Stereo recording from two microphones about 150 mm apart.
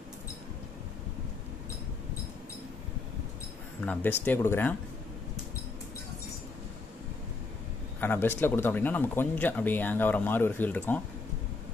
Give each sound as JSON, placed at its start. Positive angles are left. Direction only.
{"t": 3.8, "sound": "speech", "side_deg": 10}
{"t": 8.0, "sound": "speech", "side_deg": 15}